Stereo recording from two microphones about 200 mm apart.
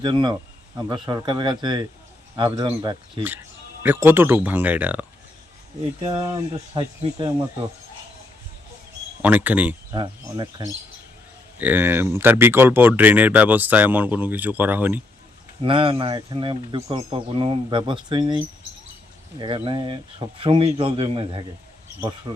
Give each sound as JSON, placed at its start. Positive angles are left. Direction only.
{"t": 0.0, "sound": "speech", "side_deg": -25}
{"t": 6.0, "sound": "speech", "side_deg": -20}
{"t": 9.2, "sound": "speech", "side_deg": -10}
{"t": 9.9, "sound": "speech", "side_deg": -20}
{"t": 15.6, "sound": "speech", "side_deg": -25}